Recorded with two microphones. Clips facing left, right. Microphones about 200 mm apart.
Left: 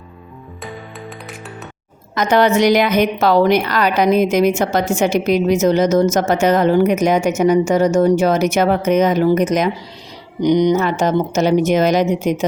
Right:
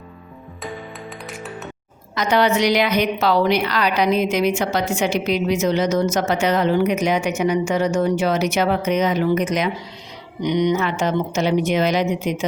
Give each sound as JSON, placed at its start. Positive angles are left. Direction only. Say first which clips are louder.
{"t": 2.1, "sound": "a woman's voice", "louder": "left 4 dB", "side_deg": 50}